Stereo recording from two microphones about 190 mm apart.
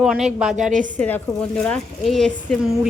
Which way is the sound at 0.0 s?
5° right (ahead or behind).